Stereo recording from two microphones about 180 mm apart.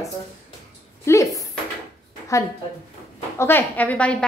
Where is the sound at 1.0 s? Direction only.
15° left (ahead or behind).